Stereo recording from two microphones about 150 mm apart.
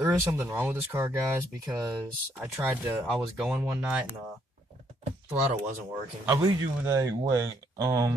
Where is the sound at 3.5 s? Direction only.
20° right (ahead or behind).